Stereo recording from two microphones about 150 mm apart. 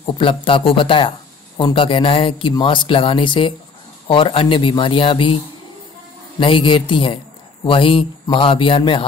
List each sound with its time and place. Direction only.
0.0 s speech: 35° left (ahead or behind)
6.4 s speech: 35° left (ahead or behind)